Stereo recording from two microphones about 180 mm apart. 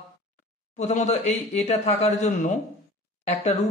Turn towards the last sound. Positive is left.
turn(degrees=35)  # may be behind; listen again after turning